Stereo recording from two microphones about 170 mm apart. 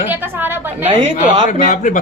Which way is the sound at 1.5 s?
50° left (ahead or behind).